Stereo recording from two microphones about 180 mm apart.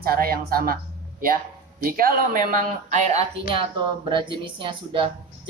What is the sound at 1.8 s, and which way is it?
Speech, 55° right (ahead or behind).